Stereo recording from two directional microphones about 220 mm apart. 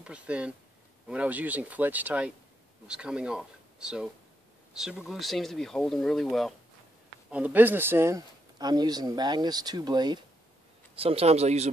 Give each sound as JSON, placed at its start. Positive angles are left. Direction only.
{"t": 0.0, "sound": "a man's voice", "side_deg": -5}